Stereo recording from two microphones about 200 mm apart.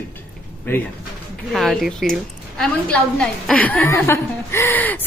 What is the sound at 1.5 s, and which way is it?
A woman's voice, centre (ahead or behind).